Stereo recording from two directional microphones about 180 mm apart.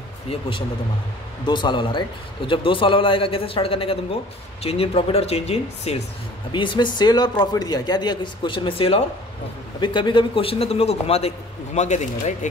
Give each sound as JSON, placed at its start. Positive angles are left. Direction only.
{"t": 0.3, "sound": "a man's voice", "side_deg": 30}